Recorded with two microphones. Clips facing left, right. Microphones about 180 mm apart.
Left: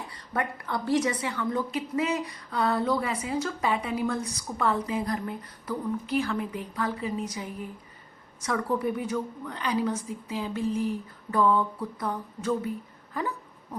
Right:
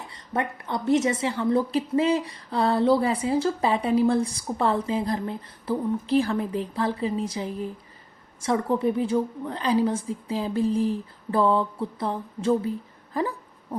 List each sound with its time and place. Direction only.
0.1 s a woman's voice: 25° right (ahead or behind)
13.1 s hiccup: 35° right (ahead or behind)